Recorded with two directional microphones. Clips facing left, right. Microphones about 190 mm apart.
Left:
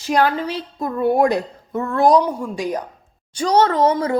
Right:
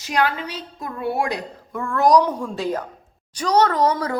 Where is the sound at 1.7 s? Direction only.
25° left (ahead or behind).